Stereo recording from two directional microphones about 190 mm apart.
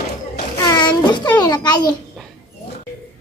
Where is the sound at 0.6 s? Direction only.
20° left (ahead or behind).